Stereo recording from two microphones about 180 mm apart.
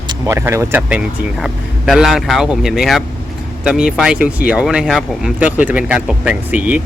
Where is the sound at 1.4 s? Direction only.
Centre (ahead or behind).